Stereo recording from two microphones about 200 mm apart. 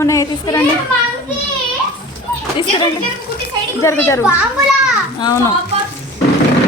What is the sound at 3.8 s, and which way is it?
Speech, 15° left (ahead or behind).